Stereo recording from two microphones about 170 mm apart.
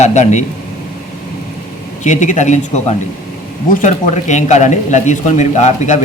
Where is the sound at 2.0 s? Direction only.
45° left (ahead or behind).